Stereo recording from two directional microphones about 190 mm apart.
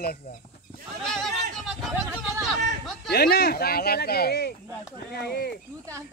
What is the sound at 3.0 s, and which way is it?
Speech, 55° left (ahead or behind).